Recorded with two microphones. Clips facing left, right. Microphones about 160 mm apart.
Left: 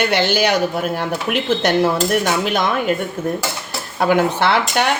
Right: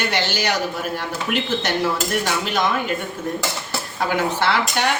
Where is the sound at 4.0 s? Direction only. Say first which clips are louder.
Left 6 dB; 60° left (ahead or behind).